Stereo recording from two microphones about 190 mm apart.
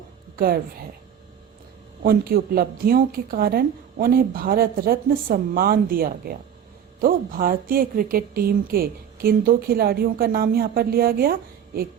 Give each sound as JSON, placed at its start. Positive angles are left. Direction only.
{"t": 0.3, "sound": "speech", "side_deg": -50}
{"t": 2.0, "sound": "speech", "side_deg": -50}